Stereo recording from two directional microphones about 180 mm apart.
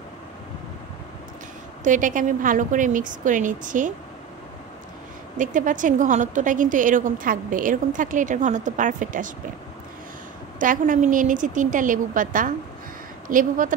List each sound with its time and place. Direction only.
1.9 s a woman's voice: 45° right (ahead or behind)
5.4 s a woman's voice: 45° right (ahead or behind)
10.6 s a woman's voice: 45° right (ahead or behind)